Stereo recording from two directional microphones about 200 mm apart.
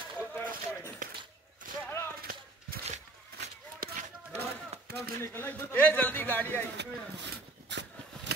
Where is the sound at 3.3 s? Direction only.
45° right (ahead or behind).